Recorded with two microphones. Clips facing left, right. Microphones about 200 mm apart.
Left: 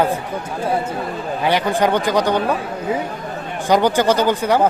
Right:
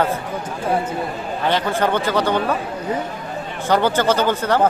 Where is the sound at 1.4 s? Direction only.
10° left (ahead or behind).